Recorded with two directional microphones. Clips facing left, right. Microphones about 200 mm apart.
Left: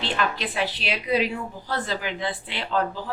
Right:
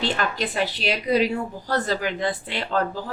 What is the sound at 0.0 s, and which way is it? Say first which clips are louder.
A woman's voice: right 2 dB; 40° right (ahead or behind).